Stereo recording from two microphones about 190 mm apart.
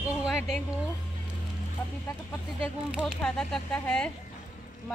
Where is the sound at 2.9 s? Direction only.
5° right (ahead or behind).